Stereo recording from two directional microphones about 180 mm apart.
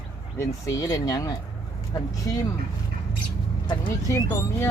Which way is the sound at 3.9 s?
15° left (ahead or behind).